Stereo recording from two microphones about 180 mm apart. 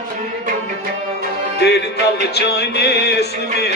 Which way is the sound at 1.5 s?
65° left (ahead or behind).